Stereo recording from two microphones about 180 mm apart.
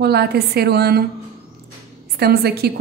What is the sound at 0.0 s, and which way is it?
A woman's voice, 65° right (ahead or behind).